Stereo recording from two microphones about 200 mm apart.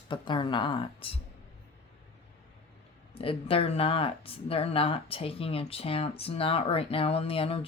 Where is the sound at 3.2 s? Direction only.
30° left (ahead or behind).